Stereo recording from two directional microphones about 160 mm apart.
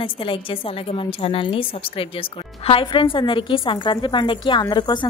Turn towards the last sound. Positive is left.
turn(degrees=25)  # may be behind; listen again after turning